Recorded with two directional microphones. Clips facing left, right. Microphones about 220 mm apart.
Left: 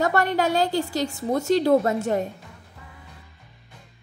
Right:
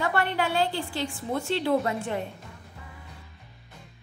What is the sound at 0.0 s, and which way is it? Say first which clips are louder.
A woman's voice: left 5 dB; 40° left (ahead or behind).